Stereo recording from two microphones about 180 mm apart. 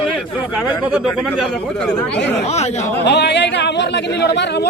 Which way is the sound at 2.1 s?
75° left (ahead or behind).